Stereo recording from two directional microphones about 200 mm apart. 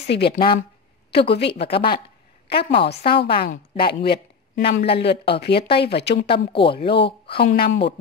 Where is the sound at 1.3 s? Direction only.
60° left (ahead or behind).